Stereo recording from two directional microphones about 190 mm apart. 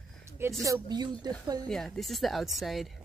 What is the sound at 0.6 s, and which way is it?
Speech, 20° right (ahead or behind).